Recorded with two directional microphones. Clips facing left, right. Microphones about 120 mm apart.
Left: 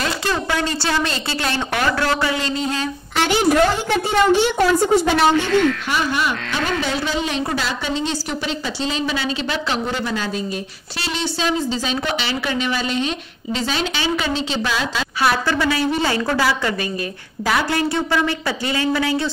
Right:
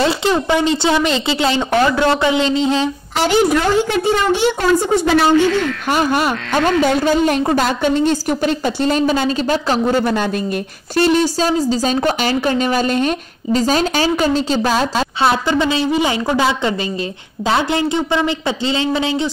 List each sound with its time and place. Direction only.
0.0 s speech: 20° right (ahead or behind)
5.9 s a woman's voice: 45° right (ahead or behind)
15.2 s speech: 20° right (ahead or behind)